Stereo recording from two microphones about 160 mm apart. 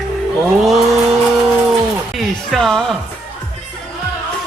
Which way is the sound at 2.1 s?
Centre (ahead or behind).